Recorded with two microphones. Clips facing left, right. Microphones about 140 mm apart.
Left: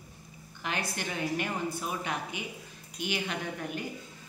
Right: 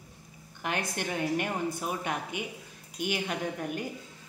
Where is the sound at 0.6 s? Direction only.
50° right (ahead or behind).